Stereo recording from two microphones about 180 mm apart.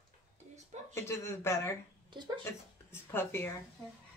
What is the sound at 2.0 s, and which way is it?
Speech, 25° right (ahead or behind).